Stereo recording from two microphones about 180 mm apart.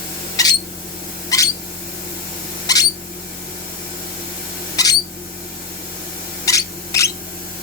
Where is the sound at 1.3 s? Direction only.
20° left (ahead or behind).